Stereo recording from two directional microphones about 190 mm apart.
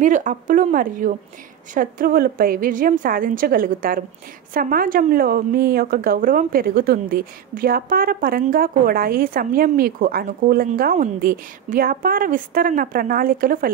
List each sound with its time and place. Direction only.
0.0 s a woman's voice: 40° right (ahead or behind)